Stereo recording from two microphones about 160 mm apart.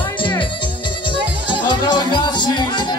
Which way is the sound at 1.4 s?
30° left (ahead or behind).